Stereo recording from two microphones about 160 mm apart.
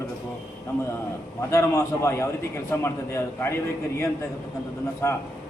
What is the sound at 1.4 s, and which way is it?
A man's voice, 20° left (ahead or behind).